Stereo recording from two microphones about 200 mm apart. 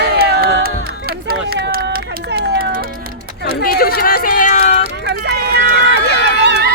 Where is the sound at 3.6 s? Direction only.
50° left (ahead or behind).